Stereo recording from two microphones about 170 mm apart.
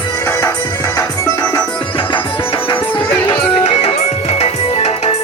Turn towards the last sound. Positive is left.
turn(degrees=40)  # may be behind; listen again after turning